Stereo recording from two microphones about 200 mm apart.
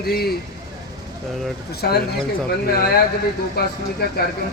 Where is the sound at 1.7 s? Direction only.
55° left (ahead or behind).